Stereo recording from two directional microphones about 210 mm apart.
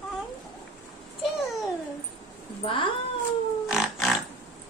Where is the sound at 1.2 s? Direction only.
Centre (ahead or behind).